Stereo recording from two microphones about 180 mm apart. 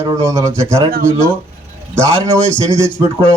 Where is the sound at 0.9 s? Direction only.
45° right (ahead or behind).